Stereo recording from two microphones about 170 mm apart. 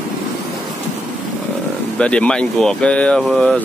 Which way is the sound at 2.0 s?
5° left (ahead or behind).